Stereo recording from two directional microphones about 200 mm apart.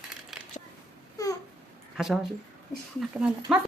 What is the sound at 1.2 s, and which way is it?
Babbling, 15° left (ahead or behind).